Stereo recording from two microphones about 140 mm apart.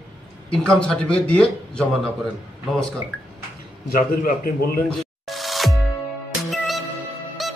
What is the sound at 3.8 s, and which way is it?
A man's voice, 85° left.